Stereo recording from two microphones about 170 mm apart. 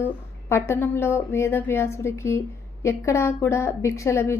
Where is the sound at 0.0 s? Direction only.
15° left (ahead or behind).